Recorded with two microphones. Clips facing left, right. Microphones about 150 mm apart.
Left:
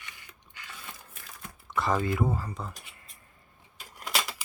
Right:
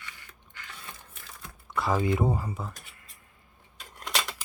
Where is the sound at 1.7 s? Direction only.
Centre (ahead or behind).